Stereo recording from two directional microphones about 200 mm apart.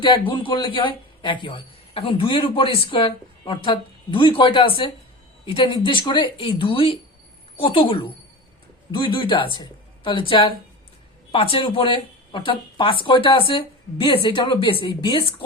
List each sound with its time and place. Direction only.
0.0 s a man's voice: 25° left (ahead or behind)